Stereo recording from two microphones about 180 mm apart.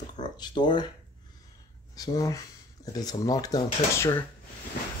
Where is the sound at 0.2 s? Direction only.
25° left (ahead or behind).